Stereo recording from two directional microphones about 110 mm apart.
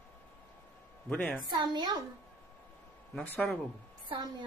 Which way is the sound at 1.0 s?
15° left (ahead or behind).